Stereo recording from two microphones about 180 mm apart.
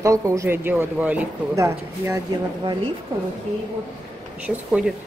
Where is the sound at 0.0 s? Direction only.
15° right (ahead or behind).